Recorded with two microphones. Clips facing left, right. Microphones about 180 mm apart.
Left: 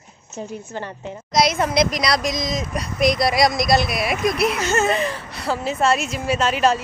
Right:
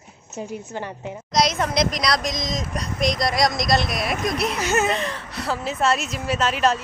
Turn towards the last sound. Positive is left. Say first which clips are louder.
# left 2 dB
turn(degrees=0)  # may be behind; listen again after turning